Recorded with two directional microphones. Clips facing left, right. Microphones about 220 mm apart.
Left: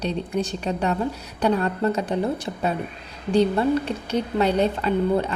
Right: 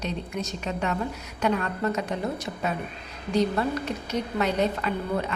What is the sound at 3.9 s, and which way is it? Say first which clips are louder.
Speech: left 4 dB; 30° left (ahead or behind).